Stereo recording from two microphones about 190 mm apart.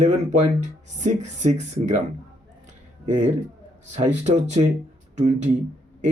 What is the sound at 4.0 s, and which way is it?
Speech, 35° right (ahead or behind).